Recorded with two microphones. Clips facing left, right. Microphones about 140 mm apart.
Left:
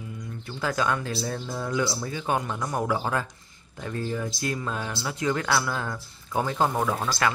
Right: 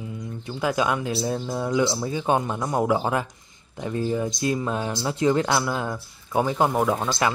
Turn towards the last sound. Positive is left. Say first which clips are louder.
# right 3 dB
turn(degrees=-20)  # may be behind; listen again after turning